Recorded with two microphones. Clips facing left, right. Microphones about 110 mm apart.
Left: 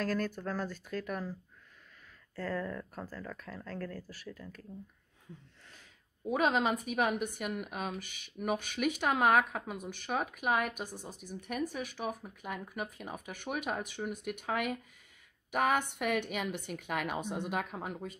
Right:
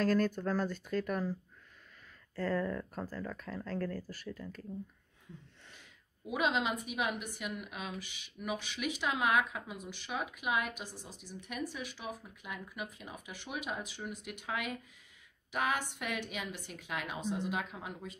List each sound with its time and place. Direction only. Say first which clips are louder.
0.0 s speech: right 4 dB; centre (ahead or behind)
2.3 s speech: right 3 dB; centre (ahead or behind)
6.2 s a woman's voice: left 3 dB; 45° left (ahead or behind)